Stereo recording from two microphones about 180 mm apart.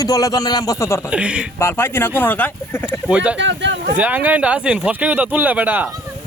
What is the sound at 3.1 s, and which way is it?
Speech, 5° right (ahead or behind).